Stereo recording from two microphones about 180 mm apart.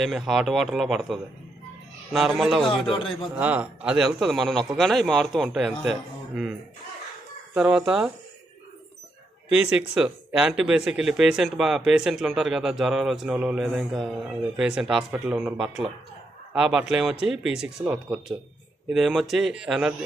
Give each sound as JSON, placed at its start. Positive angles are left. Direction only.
{"t": 0.0, "sound": "speech", "side_deg": 0}
{"t": 2.9, "sound": "speech", "side_deg": 30}
{"t": 3.3, "sound": "speech", "side_deg": -10}
{"t": 7.5, "sound": "speech", "side_deg": -5}
{"t": 9.5, "sound": "speech", "side_deg": -5}